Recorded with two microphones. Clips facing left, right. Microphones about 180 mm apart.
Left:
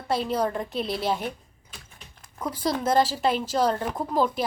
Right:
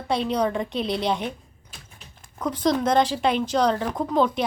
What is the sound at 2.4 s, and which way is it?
A woman's voice, 10° left (ahead or behind).